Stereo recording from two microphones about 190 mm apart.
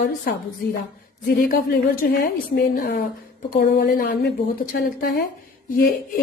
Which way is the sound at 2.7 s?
55° left (ahead or behind).